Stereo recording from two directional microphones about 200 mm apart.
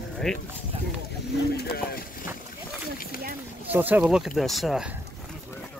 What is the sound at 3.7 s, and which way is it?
Speech, 10° right (ahead or behind).